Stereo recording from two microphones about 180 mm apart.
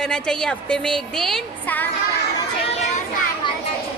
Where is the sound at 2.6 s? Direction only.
35° left (ahead or behind).